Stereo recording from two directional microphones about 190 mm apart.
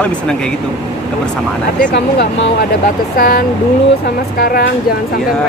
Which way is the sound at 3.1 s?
50° left (ahead or behind).